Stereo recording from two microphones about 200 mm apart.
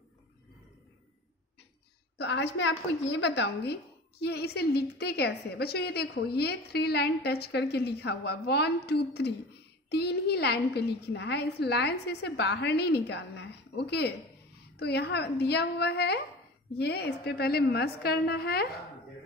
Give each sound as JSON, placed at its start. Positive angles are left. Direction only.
{"t": 2.1, "sound": "a woman's voice", "side_deg": 60}